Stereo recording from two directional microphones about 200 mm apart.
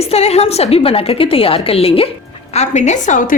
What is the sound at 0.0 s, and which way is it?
A woman's voice, 30° left (ahead or behind).